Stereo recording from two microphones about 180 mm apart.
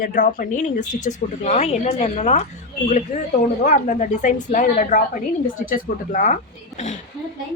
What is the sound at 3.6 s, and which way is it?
A woman's voice, 45° left (ahead or behind).